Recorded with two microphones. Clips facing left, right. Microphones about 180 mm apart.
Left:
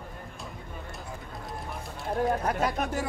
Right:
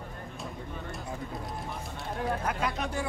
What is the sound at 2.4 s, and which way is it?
Speech, 45° left (ahead or behind).